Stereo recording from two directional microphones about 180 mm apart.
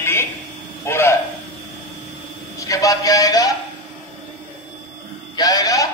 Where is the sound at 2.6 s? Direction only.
20° left (ahead or behind).